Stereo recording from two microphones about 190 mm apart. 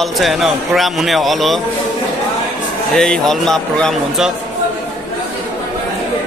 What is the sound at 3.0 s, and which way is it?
A man's voice, 5° left (ahead or behind).